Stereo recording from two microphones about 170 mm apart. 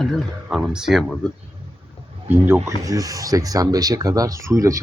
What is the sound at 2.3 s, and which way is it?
Speech, 15° right (ahead or behind).